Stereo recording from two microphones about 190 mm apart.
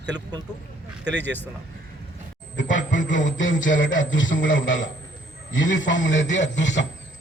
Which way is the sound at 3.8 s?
80° left.